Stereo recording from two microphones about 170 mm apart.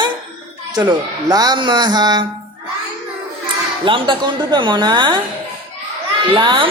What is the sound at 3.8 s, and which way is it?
A man's voice, 30° right (ahead or behind).